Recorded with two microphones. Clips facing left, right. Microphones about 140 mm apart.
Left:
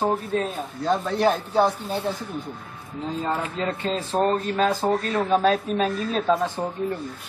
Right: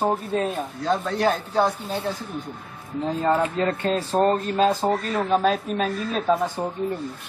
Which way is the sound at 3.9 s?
Centre (ahead or behind).